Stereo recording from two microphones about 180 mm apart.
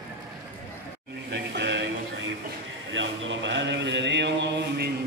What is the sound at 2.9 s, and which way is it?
Mantra, 90° right.